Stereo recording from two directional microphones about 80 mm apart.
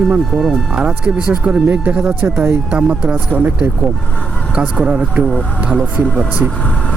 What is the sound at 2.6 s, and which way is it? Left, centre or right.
Speech, centre.